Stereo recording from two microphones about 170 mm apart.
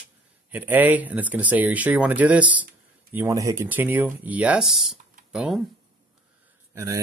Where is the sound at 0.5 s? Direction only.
10° right (ahead or behind).